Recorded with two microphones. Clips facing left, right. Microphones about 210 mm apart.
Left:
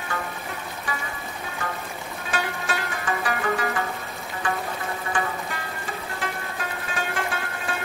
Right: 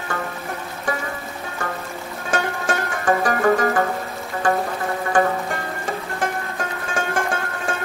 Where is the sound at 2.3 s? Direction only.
45° right (ahead or behind).